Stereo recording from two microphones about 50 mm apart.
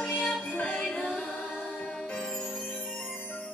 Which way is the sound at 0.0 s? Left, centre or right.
Left.